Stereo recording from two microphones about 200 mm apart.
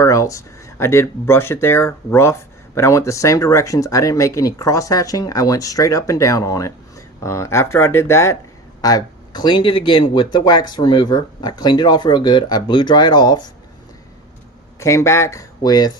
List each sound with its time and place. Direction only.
0.0 s speech: 15° left (ahead or behind)
14.8 s speech: 15° left (ahead or behind)